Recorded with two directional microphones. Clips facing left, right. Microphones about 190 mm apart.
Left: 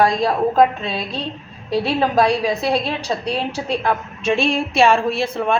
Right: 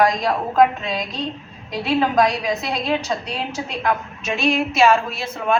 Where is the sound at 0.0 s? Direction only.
30° left (ahead or behind).